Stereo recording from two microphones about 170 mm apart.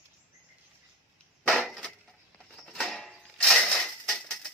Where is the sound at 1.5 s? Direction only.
Centre (ahead or behind).